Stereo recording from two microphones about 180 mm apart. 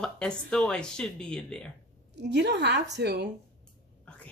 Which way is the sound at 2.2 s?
70° right (ahead or behind).